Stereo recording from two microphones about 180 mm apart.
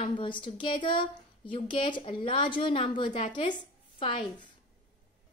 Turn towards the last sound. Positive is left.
turn(degrees=25)  # may be behind; listen again after turning